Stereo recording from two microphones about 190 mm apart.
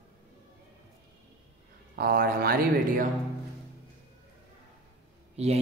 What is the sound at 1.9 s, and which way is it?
Speech, 50° right (ahead or behind).